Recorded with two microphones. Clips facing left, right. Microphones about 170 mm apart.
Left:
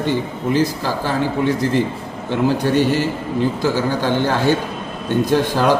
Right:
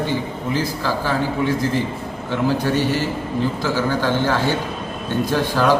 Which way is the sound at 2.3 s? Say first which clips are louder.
Left 3 dB; 15° left (ahead or behind).